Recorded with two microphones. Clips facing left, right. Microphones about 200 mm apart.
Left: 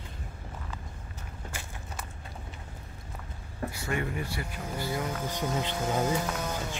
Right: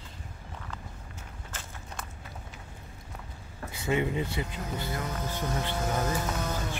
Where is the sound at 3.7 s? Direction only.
20° right (ahead or behind).